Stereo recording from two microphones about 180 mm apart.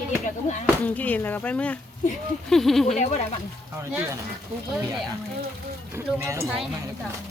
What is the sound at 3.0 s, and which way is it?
Speech, 40° left (ahead or behind).